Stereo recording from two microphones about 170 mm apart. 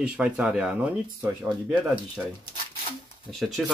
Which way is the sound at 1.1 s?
20° right (ahead or behind).